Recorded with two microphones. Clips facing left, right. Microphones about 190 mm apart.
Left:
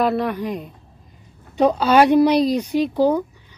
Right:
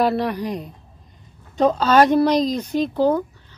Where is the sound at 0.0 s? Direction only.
Centre (ahead or behind).